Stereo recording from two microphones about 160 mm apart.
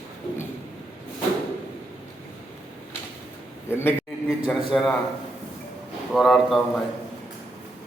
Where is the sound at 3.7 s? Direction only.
15° left (ahead or behind).